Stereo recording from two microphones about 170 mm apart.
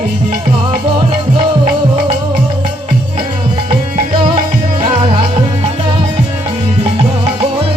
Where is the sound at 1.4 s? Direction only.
30° right (ahead or behind).